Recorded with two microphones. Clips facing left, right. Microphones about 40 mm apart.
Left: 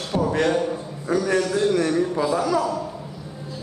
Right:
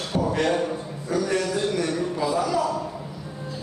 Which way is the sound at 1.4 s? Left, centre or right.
Centre.